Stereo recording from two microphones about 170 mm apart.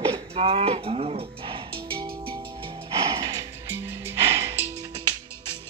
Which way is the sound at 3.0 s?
35° right (ahead or behind).